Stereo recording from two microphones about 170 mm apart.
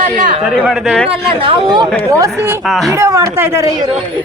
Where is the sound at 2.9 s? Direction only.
15° right (ahead or behind).